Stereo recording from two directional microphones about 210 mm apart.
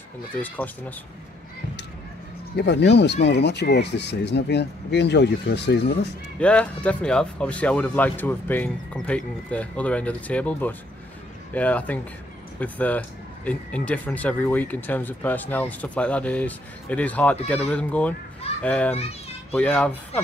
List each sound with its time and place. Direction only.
0.4 s speech: 10° left (ahead or behind)
2.5 s speech: 55° left (ahead or behind)
6.4 s speech: 5° left (ahead or behind)